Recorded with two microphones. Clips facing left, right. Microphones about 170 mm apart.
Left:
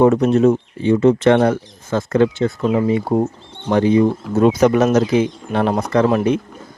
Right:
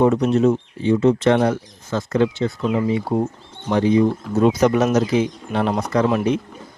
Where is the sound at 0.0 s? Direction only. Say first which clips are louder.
Left 3 dB; 50° left (ahead or behind).